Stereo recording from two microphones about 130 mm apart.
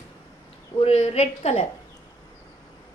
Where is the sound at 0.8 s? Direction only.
50° left (ahead or behind).